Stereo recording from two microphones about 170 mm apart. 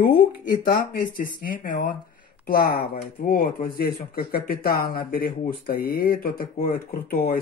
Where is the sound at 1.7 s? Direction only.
60° left (ahead or behind).